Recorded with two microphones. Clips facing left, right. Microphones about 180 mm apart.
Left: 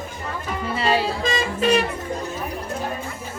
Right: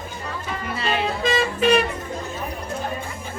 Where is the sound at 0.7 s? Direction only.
30° left (ahead or behind).